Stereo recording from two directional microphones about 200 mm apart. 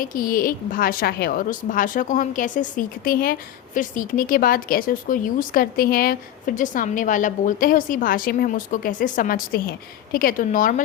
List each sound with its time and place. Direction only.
0.0 s speech: 45° left (ahead or behind)